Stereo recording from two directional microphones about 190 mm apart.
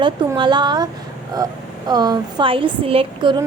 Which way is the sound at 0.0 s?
25° right (ahead or behind).